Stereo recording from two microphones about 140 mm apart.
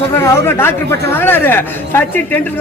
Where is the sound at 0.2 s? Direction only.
15° left (ahead or behind).